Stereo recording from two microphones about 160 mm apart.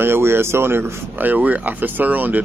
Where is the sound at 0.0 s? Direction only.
15° right (ahead or behind).